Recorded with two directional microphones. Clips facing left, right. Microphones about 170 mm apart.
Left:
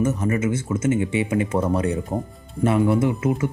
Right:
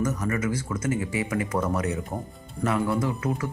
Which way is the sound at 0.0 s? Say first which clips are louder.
Left 5 dB; 25° left (ahead or behind).